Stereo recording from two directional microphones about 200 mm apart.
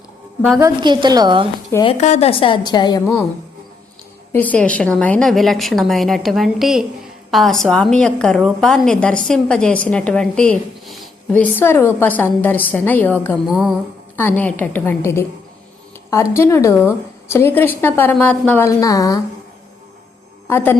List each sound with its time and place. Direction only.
0.6 s a woman's voice: 20° right (ahead or behind)
1.7 s a woman's voice: 25° left (ahead or behind)
2.0 s a woman's voice: 35° left (ahead or behind)
4.3 s a woman's voice: 10° left (ahead or behind)
13.5 s a woman's voice: centre (ahead or behind)
14.2 s a woman's voice: 10° left (ahead or behind)